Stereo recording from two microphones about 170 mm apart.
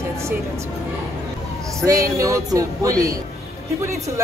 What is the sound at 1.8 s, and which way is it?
Speech, 20° right (ahead or behind).